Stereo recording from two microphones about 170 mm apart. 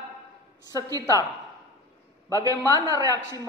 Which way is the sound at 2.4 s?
20° right (ahead or behind).